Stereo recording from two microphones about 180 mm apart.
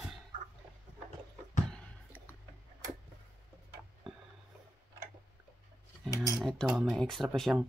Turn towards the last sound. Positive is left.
turn(degrees=-5)  # may be behind; listen again after turning